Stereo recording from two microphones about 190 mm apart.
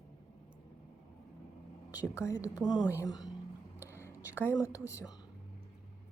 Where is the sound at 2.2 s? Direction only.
15° left (ahead or behind).